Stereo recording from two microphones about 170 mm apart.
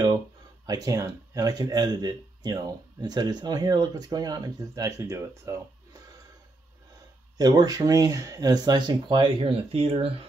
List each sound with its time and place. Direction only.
0.7 s speech: 20° right (ahead or behind)
7.3 s speech: 25° right (ahead or behind)